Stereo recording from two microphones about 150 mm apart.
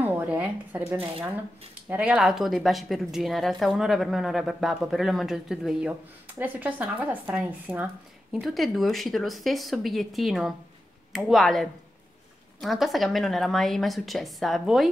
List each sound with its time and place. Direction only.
0.0 s a sound: 10° right (ahead or behind)
0.9 s speech: 40° right (ahead or behind)
1.9 s speech: 10° right (ahead or behind)